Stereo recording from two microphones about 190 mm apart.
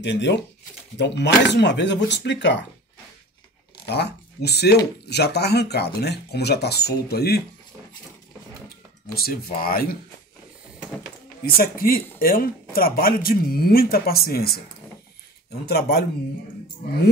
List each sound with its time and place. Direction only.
0.0 s speech: 65° left (ahead or behind)
3.8 s speech: 60° left (ahead or behind)
9.1 s speech: 50° left (ahead or behind)
11.4 s speech: 50° left (ahead or behind)
15.6 s speech: 55° left (ahead or behind)